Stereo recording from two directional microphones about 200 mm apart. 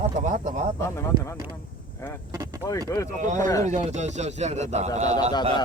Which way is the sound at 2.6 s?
15° left (ahead or behind).